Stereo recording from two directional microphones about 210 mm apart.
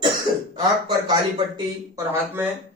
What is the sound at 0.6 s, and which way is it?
A man's voice, 20° right (ahead or behind).